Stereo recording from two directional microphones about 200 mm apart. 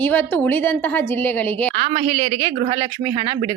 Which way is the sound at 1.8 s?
30° right (ahead or behind).